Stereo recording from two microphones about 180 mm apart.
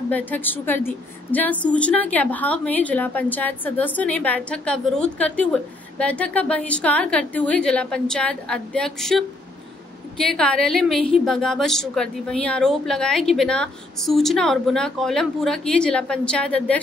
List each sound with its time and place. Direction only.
0.1 s a woman's voice: 10° left (ahead or behind)